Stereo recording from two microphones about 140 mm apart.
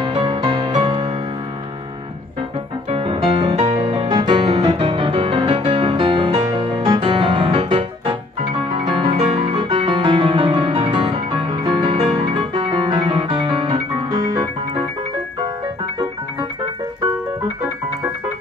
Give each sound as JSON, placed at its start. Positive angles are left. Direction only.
{"t": 0.0, "sound": "music", "side_deg": -40}
{"t": 2.9, "sound": "music", "side_deg": -40}